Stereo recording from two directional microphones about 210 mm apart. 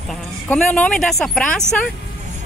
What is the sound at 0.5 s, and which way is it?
Speech, 5° left (ahead or behind).